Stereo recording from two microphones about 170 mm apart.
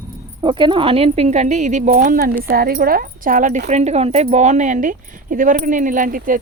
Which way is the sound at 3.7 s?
40° right (ahead or behind).